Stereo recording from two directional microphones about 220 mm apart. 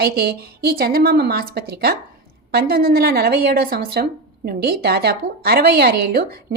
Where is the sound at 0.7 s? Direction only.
45° right (ahead or behind).